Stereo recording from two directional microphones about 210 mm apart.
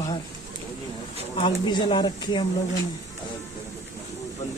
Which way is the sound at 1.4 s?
25° left (ahead or behind).